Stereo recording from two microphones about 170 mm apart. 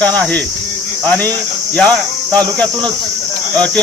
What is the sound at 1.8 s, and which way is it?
Cricket, 5° left (ahead or behind).